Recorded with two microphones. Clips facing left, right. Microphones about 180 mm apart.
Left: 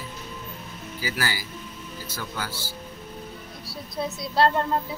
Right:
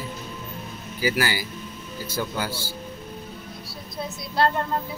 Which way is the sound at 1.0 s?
15° right (ahead or behind).